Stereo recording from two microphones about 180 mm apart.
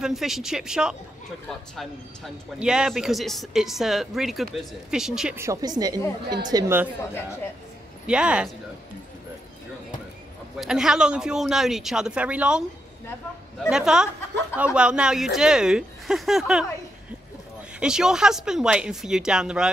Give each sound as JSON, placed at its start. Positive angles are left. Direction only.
{"t": 0.0, "sound": "a man's voice", "side_deg": 0}
{"t": 5.4, "sound": "a woman's voice", "side_deg": -20}
{"t": 8.1, "sound": "a man's voice", "side_deg": -5}
{"t": 10.6, "sound": "a man's voice", "side_deg": -5}
{"t": 17.7, "sound": "a man's voice", "side_deg": -5}